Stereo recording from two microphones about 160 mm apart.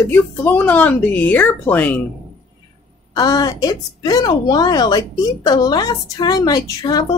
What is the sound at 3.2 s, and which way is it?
A woman's voice, 25° left (ahead or behind).